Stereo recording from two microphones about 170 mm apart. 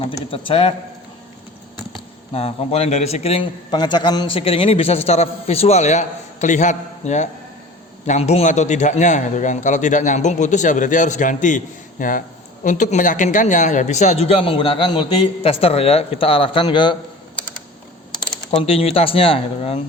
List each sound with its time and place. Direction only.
0.3 s a man's voice: 35° left (ahead or behind)
2.3 s a man's voice: 35° left (ahead or behind)
18.6 s a man's voice: 35° left (ahead or behind)